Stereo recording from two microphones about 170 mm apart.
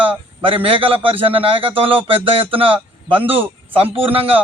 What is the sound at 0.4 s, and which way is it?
A man's voice, 30° right (ahead or behind).